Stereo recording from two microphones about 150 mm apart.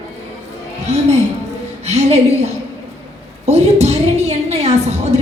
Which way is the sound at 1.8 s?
45° right (ahead or behind).